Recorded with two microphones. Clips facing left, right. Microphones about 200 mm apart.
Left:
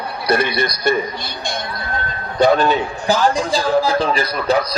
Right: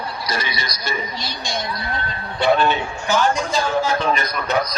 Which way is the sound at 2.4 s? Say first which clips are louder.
Left 4 dB; 40° left (ahead or behind).